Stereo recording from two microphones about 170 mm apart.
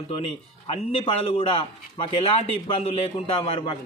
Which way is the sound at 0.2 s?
30° left (ahead or behind).